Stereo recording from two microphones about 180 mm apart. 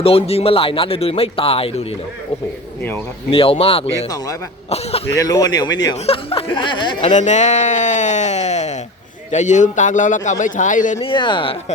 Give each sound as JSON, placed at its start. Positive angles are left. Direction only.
{"t": 0.0, "sound": "speech", "side_deg": 35}
{"t": 3.2, "sound": "speech", "side_deg": 30}
{"t": 5.0, "sound": "speech", "side_deg": 20}
{"t": 7.1, "sound": "a man's voice", "side_deg": 40}
{"t": 11.0, "sound": "speech", "side_deg": 25}